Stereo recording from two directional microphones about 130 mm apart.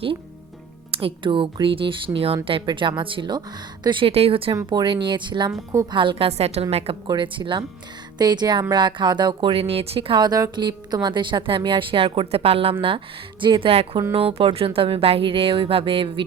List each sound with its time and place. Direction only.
0.9 s speech: 45° right (ahead or behind)
7.1 s speech: 40° right (ahead or behind)